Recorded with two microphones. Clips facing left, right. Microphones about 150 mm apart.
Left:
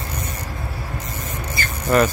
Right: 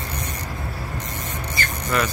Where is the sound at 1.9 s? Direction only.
40° left (ahead or behind).